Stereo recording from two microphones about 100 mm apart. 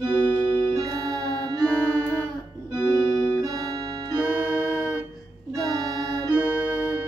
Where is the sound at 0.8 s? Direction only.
40° right (ahead or behind).